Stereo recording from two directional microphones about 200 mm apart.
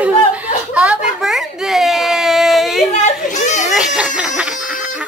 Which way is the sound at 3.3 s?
35° left (ahead or behind).